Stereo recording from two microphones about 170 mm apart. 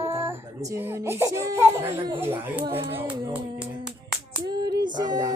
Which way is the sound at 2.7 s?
35° right (ahead or behind).